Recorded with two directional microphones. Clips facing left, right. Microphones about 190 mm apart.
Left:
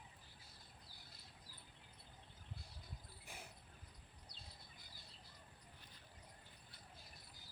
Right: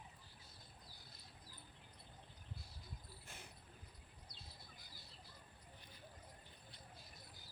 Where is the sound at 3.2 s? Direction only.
10° left (ahead or behind).